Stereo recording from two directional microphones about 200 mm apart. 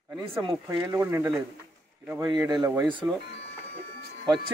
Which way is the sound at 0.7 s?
15° right (ahead or behind).